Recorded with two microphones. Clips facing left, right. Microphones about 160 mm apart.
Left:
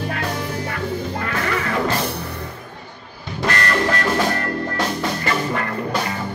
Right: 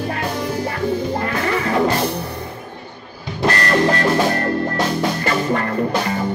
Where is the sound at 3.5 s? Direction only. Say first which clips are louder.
Right 4 dB; 35° right (ahead or behind).